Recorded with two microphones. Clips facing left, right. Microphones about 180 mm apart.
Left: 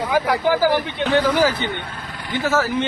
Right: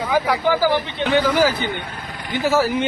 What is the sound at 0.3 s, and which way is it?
Speech, 10° left (ahead or behind).